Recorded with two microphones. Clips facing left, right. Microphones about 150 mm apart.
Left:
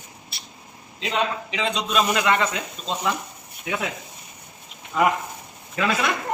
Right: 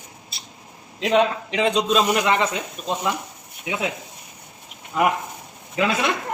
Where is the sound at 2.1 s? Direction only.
15° right (ahead or behind).